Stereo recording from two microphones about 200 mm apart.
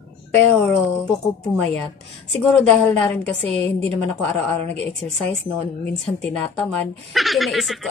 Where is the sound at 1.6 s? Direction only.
5° left (ahead or behind).